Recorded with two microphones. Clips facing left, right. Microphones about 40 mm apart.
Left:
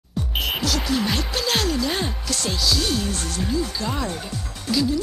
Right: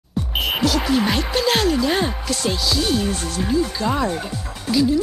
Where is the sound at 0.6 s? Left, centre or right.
Centre.